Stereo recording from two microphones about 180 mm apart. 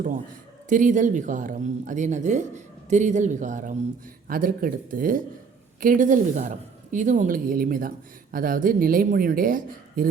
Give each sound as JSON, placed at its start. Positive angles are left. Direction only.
{"t": 0.7, "sound": "speech", "side_deg": -45}